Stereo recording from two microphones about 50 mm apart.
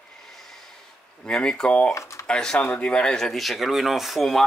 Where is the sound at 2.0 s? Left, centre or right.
Left.